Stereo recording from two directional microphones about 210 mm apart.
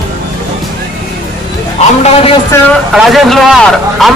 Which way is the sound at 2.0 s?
30° left (ahead or behind).